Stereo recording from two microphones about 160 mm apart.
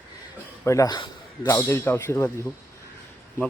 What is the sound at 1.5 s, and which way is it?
Speech, 15° left (ahead or behind).